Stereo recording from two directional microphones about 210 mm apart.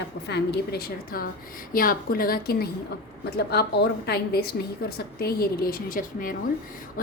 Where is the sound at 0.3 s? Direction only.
50° left (ahead or behind).